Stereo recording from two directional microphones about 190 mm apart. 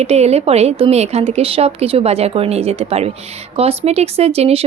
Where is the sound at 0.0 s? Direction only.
35° right (ahead or behind).